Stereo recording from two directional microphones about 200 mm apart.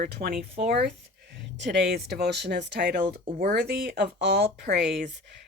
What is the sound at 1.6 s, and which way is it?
Speech, 55° right (ahead or behind).